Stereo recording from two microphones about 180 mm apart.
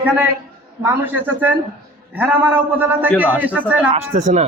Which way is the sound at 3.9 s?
35° right (ahead or behind).